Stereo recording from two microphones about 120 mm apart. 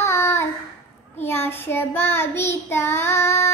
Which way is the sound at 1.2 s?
20° left (ahead or behind).